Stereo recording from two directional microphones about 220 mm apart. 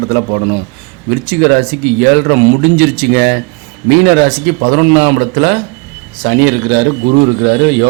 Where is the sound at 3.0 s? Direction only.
45° right (ahead or behind).